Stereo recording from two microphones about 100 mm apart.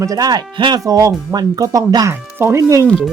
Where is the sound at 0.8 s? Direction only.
35° right (ahead or behind).